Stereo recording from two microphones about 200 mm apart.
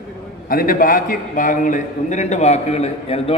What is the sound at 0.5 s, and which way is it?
A man's voice, 45° left (ahead or behind).